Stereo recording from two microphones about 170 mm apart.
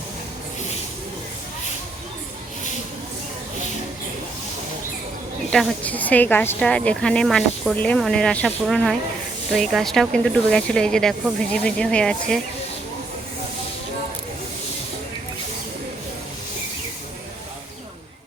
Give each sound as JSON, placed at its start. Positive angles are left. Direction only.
{"t": 5.5, "sound": "speech", "side_deg": 5}